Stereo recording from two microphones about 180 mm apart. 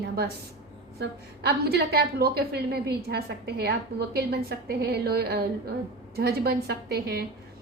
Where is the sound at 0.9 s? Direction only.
65° right (ahead or behind).